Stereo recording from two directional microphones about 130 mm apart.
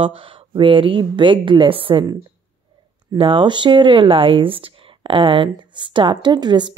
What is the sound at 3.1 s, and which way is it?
Speech, 40° right (ahead or behind).